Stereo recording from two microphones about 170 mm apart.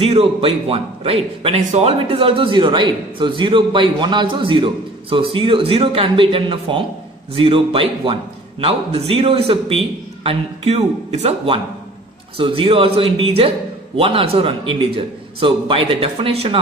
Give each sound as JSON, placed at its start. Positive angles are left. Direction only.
{"t": 0.0, "sound": "a man's voice", "side_deg": -35}